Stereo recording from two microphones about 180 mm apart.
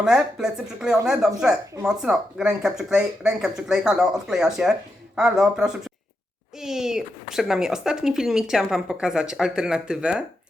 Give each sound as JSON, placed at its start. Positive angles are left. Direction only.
{"t": 0.0, "sound": "speech", "side_deg": -5}